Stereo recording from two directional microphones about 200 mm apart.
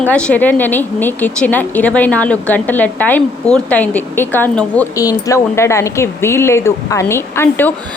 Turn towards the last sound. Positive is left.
turn(degrees=10)  # may be behind; listen again after turning